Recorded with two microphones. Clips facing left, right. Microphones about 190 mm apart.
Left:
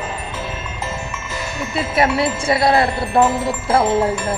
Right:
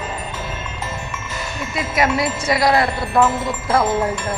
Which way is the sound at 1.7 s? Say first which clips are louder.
Left 2 dB; 30° left (ahead or behind).